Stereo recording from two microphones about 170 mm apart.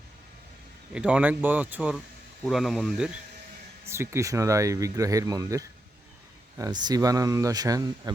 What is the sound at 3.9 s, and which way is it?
Speech, 15° right (ahead or behind).